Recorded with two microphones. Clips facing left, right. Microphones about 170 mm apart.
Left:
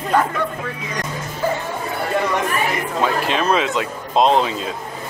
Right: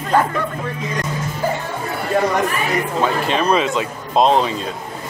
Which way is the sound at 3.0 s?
Centre (ahead or behind).